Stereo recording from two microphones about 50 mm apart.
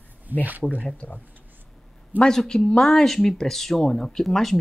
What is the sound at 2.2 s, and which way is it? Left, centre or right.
Speech, centre.